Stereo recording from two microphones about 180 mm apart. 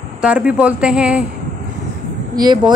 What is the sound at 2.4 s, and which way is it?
Speech, 25° right (ahead or behind).